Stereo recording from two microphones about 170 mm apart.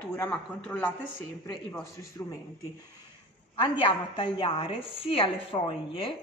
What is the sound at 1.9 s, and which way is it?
Speech, 20° left (ahead or behind).